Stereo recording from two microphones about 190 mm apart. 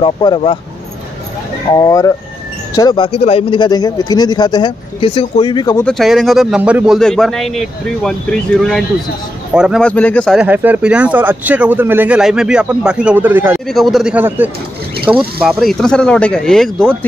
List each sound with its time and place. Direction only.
0.0 s speech: 25° left (ahead or behind)
1.7 s speech: 20° left (ahead or behind)
5.9 s speech: centre (ahead or behind)
10.3 s speech: 10° right (ahead or behind)
13.7 s speech: centre (ahead or behind)